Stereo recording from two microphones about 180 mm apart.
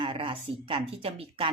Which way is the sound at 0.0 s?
30° right (ahead or behind).